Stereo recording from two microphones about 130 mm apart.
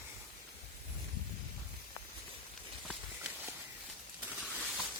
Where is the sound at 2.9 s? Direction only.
10° right (ahead or behind).